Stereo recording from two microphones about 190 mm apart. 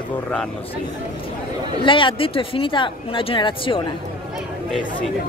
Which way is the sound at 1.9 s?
25° left (ahead or behind).